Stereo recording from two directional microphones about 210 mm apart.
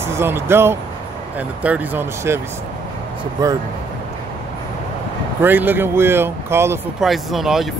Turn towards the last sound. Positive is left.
turn(degrees=0)  # may be behind; listen again after turning